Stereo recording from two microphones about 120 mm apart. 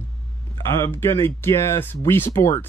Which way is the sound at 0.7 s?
20° left (ahead or behind).